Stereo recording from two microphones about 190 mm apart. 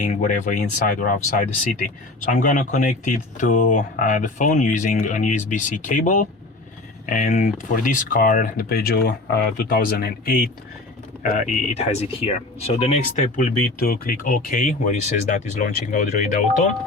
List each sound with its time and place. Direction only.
0.0 s speech: 45° left (ahead or behind)
2.2 s speech: 45° left (ahead or behind)
11.2 s speech: 40° left (ahead or behind)